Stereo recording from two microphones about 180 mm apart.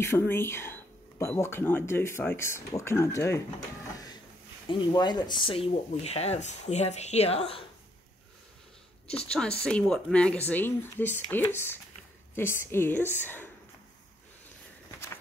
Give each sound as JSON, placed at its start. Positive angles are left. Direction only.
{"t": 0.0, "sound": "speech", "side_deg": 15}
{"t": 4.6, "sound": "speech", "side_deg": 25}
{"t": 9.0, "sound": "speech", "side_deg": 35}
{"t": 9.6, "sound": "speech", "side_deg": 5}